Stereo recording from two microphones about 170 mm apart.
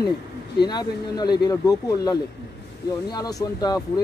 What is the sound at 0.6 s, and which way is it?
Speech, 25° left (ahead or behind).